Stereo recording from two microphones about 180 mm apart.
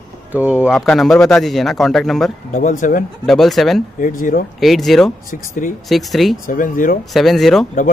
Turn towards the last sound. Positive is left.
turn(degrees=0)  # may be behind; listen again after turning